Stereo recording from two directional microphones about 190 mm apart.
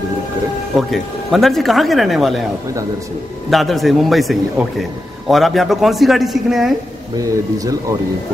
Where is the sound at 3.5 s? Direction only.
Centre (ahead or behind).